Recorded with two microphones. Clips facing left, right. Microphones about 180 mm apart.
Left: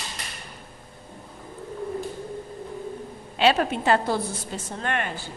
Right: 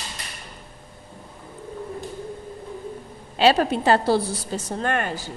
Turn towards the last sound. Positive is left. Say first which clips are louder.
# right 4 dB
turn(degrees=-40)  # may be behind; listen again after turning